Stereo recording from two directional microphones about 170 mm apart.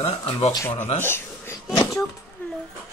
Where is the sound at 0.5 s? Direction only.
15° left (ahead or behind).